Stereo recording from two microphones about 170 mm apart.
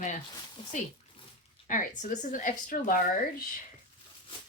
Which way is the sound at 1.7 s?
45° left (ahead or behind).